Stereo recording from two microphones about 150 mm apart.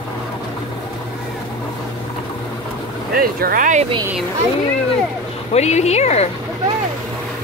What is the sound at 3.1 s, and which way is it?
Speech, 75° right (ahead or behind).